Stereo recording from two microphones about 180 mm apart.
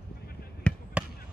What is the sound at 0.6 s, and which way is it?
Basketball bounce, 5° left (ahead or behind).